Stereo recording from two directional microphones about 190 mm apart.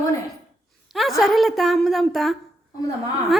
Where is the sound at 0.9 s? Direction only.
Centre (ahead or behind).